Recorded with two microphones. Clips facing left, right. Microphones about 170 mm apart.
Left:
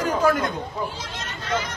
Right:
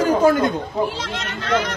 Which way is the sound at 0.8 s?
75° right (ahead or behind).